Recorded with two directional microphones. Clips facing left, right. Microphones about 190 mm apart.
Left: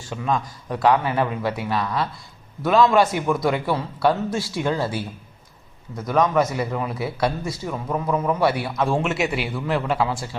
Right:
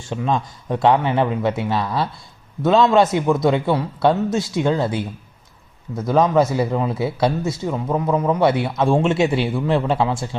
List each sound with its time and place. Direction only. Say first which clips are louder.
0.0 s a man's voice: right 3 dB; 25° right (ahead or behind)
6.1 s a man's voice: right 3 dB; 30° right (ahead or behind)